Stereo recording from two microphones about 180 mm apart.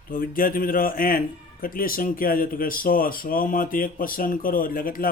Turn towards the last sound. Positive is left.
turn(degrees=50)  # may be behind; listen again after turning